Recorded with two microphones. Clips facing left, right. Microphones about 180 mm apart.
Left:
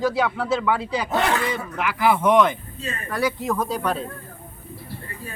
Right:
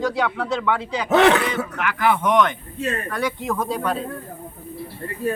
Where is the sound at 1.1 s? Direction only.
80° right.